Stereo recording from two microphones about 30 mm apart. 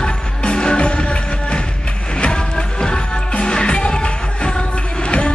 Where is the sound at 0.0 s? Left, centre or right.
Left.